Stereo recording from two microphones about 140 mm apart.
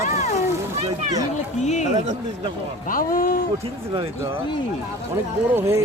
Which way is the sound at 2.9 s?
85° left.